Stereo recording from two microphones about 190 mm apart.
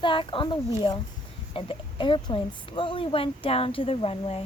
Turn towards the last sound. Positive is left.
turn(degrees=30)  # may be behind; listen again after turning